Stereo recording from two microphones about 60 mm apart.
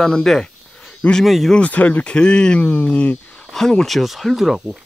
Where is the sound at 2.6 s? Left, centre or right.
Left.